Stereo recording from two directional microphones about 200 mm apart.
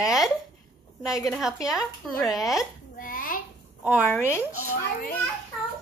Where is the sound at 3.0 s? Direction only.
45° left (ahead or behind).